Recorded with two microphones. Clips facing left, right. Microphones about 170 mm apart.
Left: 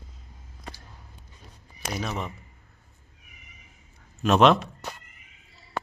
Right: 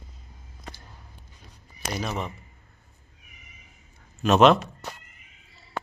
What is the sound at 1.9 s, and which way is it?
Speech, centre (ahead or behind).